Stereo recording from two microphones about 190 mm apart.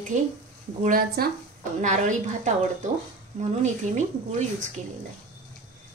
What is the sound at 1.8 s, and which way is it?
A woman's voice, 40° right (ahead or behind).